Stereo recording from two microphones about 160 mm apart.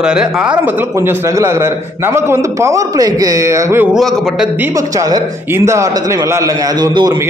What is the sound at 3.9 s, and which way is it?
Speech, centre (ahead or behind).